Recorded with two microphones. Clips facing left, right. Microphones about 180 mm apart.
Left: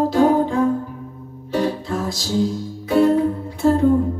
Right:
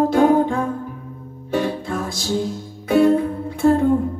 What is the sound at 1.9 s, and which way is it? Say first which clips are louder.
Music: even; 50° right (ahead or behind).